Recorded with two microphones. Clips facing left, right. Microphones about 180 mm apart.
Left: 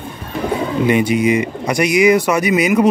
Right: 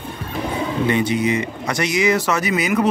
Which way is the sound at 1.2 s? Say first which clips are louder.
Left 5 dB; 15° left (ahead or behind).